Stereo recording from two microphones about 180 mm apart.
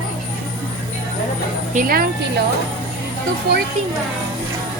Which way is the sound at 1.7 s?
55° right (ahead or behind).